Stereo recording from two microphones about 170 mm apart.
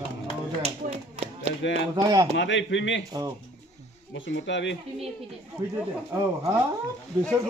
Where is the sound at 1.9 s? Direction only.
20° right (ahead or behind).